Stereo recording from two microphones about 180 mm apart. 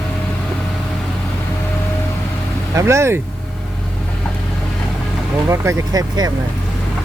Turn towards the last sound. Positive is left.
turn(degrees=-20)  # may be behind; listen again after turning